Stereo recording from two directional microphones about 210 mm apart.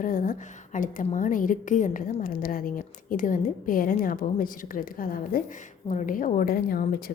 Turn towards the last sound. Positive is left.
turn(degrees=45)  # may be behind; listen again after turning